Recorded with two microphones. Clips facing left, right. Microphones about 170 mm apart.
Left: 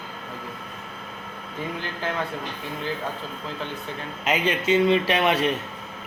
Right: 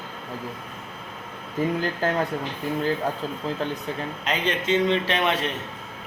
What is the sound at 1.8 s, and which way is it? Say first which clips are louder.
Speech: right 5 dB; 40° right (ahead or behind).